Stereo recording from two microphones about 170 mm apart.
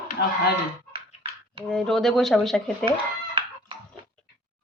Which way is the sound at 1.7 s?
5° left (ahead or behind).